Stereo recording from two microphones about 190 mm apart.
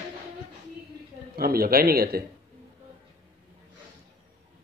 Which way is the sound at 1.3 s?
50° right (ahead or behind).